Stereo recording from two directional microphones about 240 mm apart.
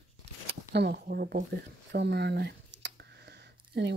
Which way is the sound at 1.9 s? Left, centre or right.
Right.